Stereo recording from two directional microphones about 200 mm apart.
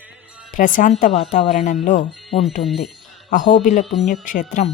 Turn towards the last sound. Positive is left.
turn(degrees=40)  # may be behind; listen again after turning